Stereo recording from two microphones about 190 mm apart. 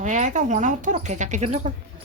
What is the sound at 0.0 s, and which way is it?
Speech, 40° right (ahead or behind).